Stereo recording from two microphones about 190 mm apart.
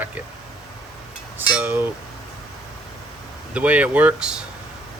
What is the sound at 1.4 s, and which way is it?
Chink, 10° right (ahead or behind).